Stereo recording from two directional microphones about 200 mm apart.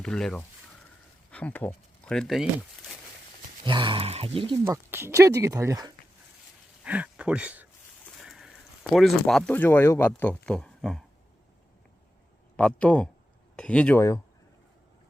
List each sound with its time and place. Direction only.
0.0 s speech: 5° left (ahead or behind)
3.6 s speech: 25° right (ahead or behind)
4.6 s speech: 10° right (ahead or behind)
6.8 s speech: 5° right (ahead or behind)
12.5 s speech: 5° left (ahead or behind)